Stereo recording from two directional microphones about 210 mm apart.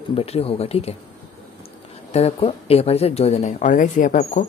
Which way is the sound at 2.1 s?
30° left (ahead or behind).